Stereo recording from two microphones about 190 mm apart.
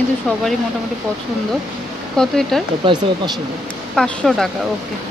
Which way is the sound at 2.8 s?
25° right (ahead or behind).